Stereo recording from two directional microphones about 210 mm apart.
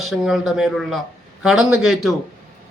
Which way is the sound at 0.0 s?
Centre (ahead or behind).